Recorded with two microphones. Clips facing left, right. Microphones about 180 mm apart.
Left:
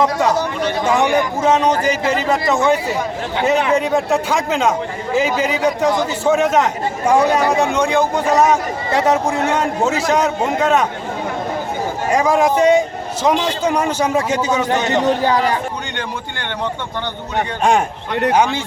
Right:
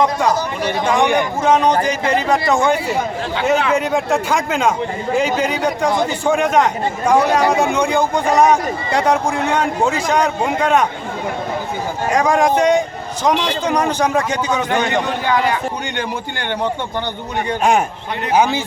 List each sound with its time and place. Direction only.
0.0 s a man's voice: 5° left (ahead or behind)
3.8 s a man's voice: centre (ahead or behind)
12.1 s a man's voice: 5° left (ahead or behind)
14.8 s a man's voice: 40° left (ahead or behind)
17.6 s a man's voice: 5° right (ahead or behind)